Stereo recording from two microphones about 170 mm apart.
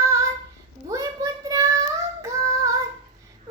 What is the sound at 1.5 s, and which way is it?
Child singing, 20° right (ahead or behind).